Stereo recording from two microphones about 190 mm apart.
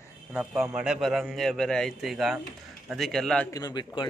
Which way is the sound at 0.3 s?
5° right (ahead or behind).